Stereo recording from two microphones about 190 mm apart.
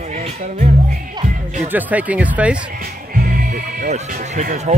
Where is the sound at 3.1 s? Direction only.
50° right (ahead or behind).